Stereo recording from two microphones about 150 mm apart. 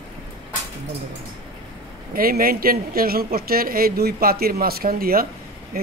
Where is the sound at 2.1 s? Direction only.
80° right.